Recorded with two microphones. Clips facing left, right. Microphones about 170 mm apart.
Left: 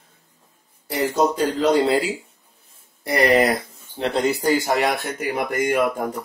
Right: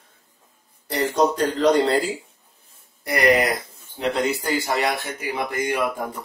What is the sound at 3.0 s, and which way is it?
Speech, 30° left (ahead or behind).